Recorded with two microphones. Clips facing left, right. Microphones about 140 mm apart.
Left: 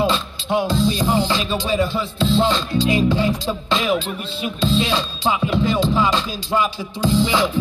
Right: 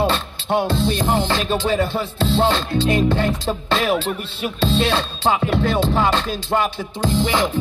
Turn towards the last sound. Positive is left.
turn(degrees=-50)  # may be behind; listen again after turning